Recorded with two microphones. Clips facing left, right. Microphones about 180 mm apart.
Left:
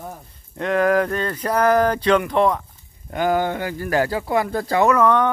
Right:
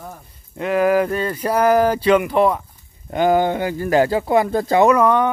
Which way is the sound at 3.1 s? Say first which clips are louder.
Right 4 dB; 20° right (ahead or behind).